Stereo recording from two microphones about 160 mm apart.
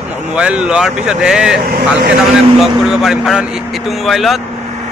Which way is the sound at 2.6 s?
Centre (ahead or behind).